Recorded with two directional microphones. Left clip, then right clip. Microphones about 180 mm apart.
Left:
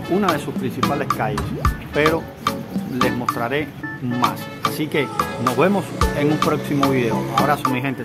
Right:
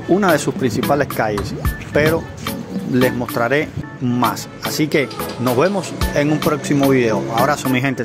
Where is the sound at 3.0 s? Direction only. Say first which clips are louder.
Right 2 dB; 25° right (ahead or behind).